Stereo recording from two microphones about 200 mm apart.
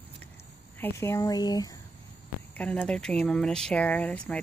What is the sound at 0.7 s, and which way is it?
Speech, 10° left (ahead or behind).